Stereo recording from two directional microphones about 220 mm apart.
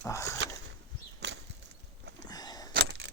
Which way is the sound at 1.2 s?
50° right (ahead or behind).